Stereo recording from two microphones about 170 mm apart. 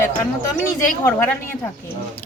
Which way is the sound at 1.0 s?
15° left (ahead or behind).